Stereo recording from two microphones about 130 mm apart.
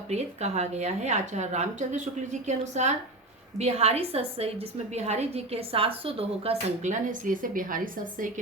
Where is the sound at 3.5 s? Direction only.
55° right (ahead or behind).